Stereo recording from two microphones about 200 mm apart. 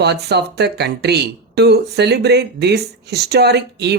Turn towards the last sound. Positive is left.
turn(degrees=-55)  # may be behind; listen again after turning